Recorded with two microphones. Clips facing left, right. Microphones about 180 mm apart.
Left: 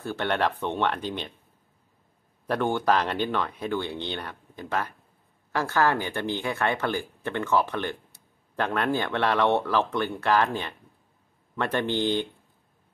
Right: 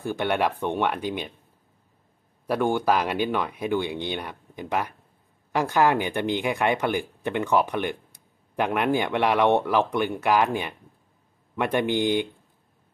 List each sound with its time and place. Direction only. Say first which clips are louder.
0.0 s speech: right 2 dB; 10° right (ahead or behind)
2.4 s speech: right 2 dB; 10° right (ahead or behind)